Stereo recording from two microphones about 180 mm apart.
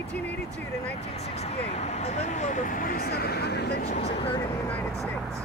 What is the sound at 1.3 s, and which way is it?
Speech, 35° left (ahead or behind).